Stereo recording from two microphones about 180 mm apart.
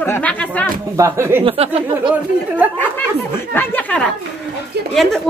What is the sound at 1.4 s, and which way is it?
Speech, 30° right (ahead or behind).